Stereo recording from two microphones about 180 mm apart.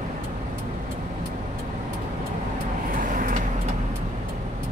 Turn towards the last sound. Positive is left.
turn(degrees=-50)  # may be behind; listen again after turning